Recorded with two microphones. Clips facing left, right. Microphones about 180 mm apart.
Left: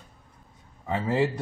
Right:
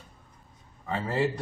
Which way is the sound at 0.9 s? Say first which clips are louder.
Left 3 dB; 20° left (ahead or behind).